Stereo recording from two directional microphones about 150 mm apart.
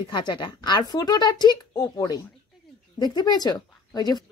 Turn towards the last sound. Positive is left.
turn(degrees=25)  # may be behind; listen again after turning